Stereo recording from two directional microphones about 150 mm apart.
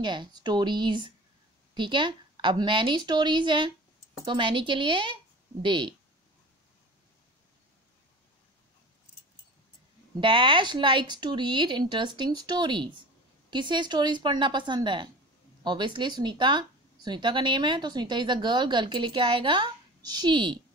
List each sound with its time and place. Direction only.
0.0 s a woman's voice: 30° right (ahead or behind)
10.2 s a woman's voice: 35° right (ahead or behind)